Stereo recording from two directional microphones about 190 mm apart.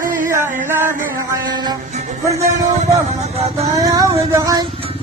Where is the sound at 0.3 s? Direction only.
15° right (ahead or behind).